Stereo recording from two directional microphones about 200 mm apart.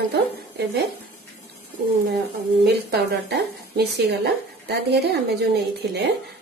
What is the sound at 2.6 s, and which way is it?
A woman's voice, 55° right (ahead or behind).